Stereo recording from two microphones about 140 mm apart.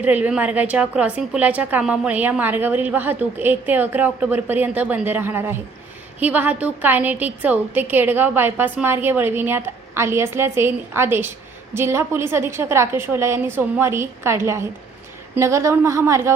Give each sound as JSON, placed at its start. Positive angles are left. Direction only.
{"t": 0.0, "sound": "a woman's voice", "side_deg": -10}